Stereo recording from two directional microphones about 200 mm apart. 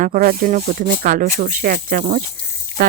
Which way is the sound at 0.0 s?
45° right (ahead or behind).